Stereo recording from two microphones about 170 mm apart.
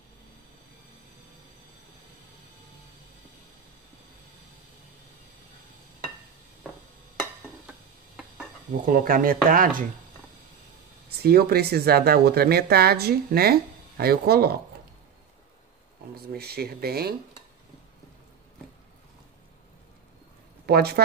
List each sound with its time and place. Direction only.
8.8 s speech: 55° right (ahead or behind)
11.1 s speech: 65° right (ahead or behind)
16.3 s speech: 65° right (ahead or behind)
20.6 s speech: 65° right (ahead or behind)